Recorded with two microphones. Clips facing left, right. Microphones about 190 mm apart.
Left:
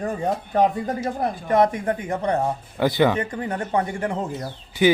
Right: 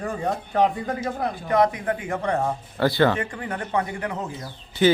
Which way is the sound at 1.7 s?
40° left (ahead or behind).